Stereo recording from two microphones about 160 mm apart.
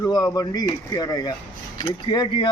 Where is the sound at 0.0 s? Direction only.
20° left (ahead or behind).